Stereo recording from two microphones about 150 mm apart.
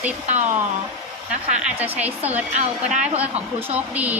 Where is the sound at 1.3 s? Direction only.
50° right (ahead or behind).